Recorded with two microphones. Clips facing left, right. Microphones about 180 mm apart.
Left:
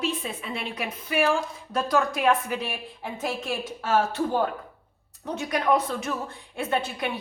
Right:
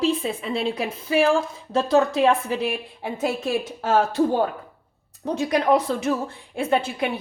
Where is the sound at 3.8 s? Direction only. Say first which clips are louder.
Right 4 dB; 35° right (ahead or behind).